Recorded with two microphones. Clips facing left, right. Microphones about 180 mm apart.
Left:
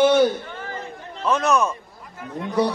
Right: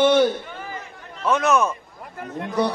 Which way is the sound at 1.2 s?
Centre (ahead or behind).